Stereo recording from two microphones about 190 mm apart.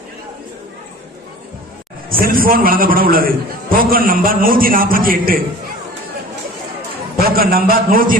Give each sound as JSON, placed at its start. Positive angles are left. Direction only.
{"t": 2.0, "sound": "a man's voice", "side_deg": -50}
{"t": 7.3, "sound": "a man's voice", "side_deg": -50}